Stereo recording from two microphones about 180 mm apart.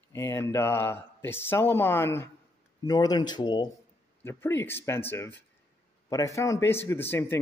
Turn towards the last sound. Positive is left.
turn(degrees=10)  # may be behind; listen again after turning